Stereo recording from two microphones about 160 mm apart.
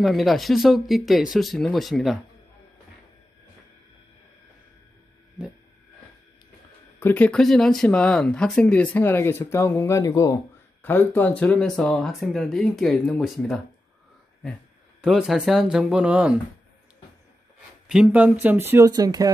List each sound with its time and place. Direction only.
0.0 s speech: centre (ahead or behind)
7.0 s speech: 10° left (ahead or behind)
15.0 s speech: 5° right (ahead or behind)
17.8 s speech: 5° right (ahead or behind)
18.9 s speech: 25° right (ahead or behind)